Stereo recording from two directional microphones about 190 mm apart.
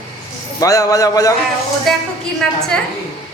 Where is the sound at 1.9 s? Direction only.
Centre (ahead or behind).